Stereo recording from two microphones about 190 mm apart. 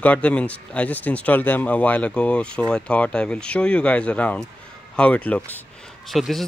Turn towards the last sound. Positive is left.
turn(degrees=0)  # may be behind; listen again after turning